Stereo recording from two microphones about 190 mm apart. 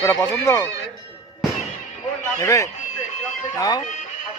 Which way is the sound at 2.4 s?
15° left (ahead or behind).